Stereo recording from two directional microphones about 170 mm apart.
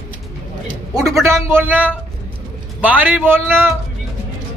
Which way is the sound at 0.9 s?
20° right (ahead or behind).